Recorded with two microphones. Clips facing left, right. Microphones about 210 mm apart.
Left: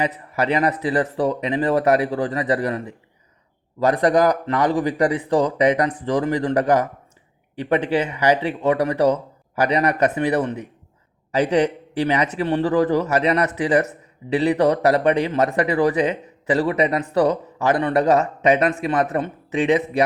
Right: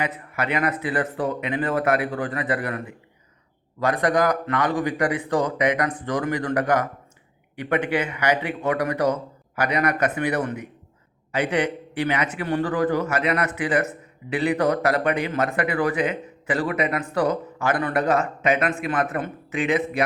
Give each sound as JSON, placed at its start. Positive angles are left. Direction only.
{"t": 0.0, "sound": "speech", "side_deg": 35}